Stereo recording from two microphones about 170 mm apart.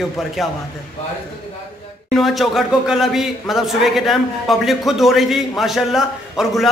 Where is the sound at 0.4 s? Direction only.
Centre (ahead or behind).